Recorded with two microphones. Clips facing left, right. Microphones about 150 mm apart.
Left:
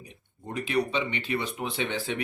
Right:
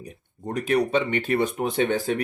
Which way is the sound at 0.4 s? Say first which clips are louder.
Right 5 dB; 45° right (ahead or behind).